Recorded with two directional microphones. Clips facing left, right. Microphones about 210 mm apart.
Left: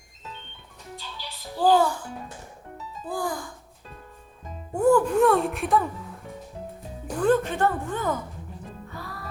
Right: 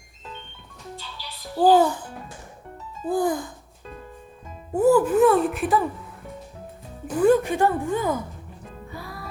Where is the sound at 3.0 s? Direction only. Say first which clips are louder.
Right 7 dB; 20° right (ahead or behind).